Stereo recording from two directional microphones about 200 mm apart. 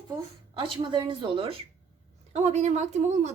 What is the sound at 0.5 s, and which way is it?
A woman's voice, 25° right (ahead or behind).